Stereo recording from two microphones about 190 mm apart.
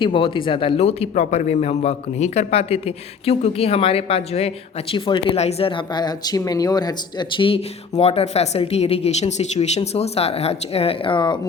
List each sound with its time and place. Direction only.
0.0 s a man's voice: 25° left (ahead or behind)